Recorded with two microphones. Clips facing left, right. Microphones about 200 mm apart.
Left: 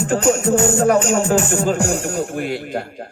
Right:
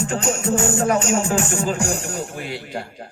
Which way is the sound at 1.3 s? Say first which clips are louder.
Left 4 dB; 40° left (ahead or behind).